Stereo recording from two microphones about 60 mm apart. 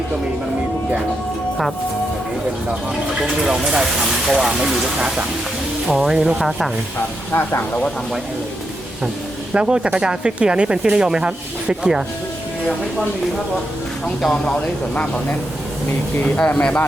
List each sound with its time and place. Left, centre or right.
3.2 s speech: centre
7.3 s speech: left
9.5 s speech: centre
14.0 s speech: centre
15.9 s speech: left
16.4 s speech: left